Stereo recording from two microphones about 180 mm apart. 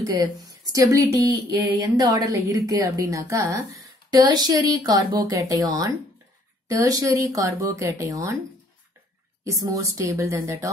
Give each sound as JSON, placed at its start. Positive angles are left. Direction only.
{"t": 0.0, "sound": "a woman's voice", "side_deg": -20}
{"t": 9.4, "sound": "speech", "side_deg": -20}